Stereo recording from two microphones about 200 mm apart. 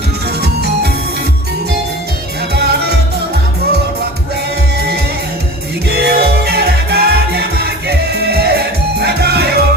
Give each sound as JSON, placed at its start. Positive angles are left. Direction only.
{"t": 0.4, "sound": "music", "side_deg": -55}
{"t": 2.5, "sound": "music", "side_deg": -55}
{"t": 5.9, "sound": "music", "side_deg": -55}